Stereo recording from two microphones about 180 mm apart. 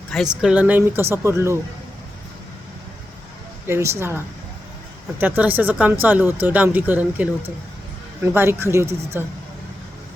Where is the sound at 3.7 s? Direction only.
15° right (ahead or behind).